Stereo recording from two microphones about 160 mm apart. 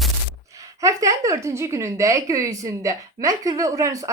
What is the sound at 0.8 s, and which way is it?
A woman's voice, 20° right (ahead or behind).